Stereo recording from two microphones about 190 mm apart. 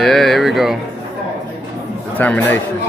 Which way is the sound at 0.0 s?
Centre (ahead or behind).